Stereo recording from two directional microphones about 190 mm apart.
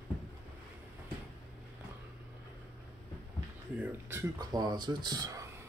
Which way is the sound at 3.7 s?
10° right (ahead or behind).